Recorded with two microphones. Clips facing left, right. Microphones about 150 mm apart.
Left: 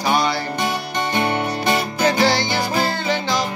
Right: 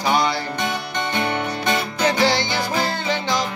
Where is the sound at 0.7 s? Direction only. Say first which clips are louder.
Left 2 dB; 40° left (ahead or behind).